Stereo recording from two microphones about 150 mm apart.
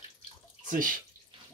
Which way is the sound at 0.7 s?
65° right (ahead or behind).